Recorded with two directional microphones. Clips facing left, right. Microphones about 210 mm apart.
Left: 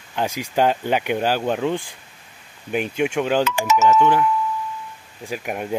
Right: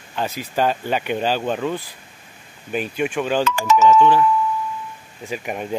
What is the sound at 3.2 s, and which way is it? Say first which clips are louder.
Speech: even; 15° left (ahead or behind).